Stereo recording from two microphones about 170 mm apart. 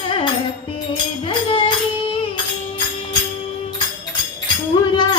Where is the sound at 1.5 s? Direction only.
30° left (ahead or behind).